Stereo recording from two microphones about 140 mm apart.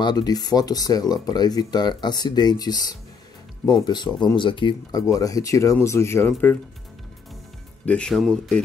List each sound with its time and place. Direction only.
0.0 s speech: 30° left (ahead or behind)
5.0 s speech: 25° left (ahead or behind)
7.8 s speech: 5° left (ahead or behind)